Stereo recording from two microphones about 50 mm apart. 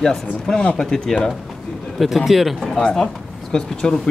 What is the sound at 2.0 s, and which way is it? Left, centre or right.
Speech, centre.